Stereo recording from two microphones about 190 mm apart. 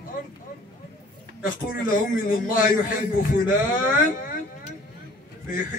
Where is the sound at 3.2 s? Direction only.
45° left (ahead or behind).